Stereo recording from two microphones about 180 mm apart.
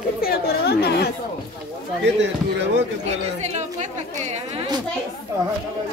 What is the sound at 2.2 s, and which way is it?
Speech, 75° right (ahead or behind).